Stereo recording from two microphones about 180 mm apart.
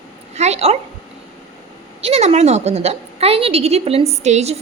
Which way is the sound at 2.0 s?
35° right (ahead or behind).